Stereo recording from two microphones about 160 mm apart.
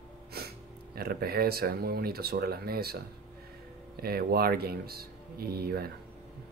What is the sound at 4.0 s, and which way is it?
A man's voice, 75° right (ahead or behind).